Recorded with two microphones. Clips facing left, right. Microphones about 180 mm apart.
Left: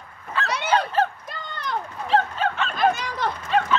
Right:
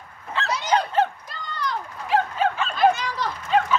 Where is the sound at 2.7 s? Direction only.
50° left (ahead or behind).